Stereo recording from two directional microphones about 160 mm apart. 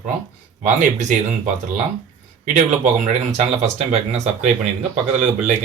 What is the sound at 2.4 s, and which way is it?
Speech, 50° right (ahead or behind).